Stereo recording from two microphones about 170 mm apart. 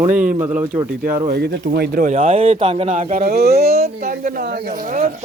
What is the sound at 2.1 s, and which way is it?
Speech, 35° right (ahead or behind).